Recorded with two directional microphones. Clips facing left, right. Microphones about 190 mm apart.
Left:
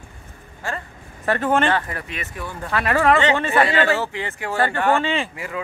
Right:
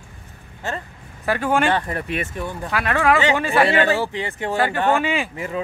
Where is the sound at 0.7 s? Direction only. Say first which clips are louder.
Right 1 dB; 20° right (ahead or behind).